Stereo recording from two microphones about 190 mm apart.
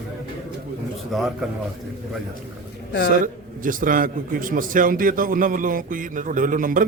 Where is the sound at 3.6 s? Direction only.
45° right (ahead or behind).